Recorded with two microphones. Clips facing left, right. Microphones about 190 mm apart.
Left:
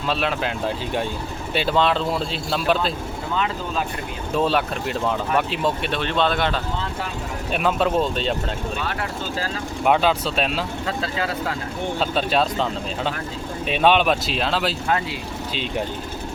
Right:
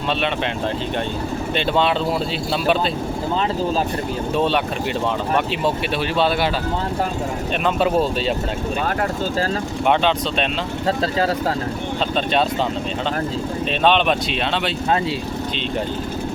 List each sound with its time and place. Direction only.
1.5 s speech: centre (ahead or behind)
4.4 s speech: centre (ahead or behind)
5.6 s speech: 5° right (ahead or behind)
7.6 s speech: 5° right (ahead or behind)
9.8 s speech: 5° left (ahead or behind)
10.8 s speech: 35° right (ahead or behind)
12.1 s speech: 5° left (ahead or behind)
13.7 s speech: 10° left (ahead or behind)